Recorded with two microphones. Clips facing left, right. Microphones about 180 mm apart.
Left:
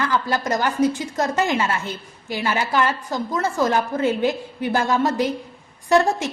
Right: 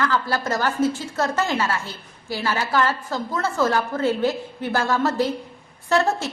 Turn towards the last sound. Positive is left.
turn(degrees=15)  # may be behind; listen again after turning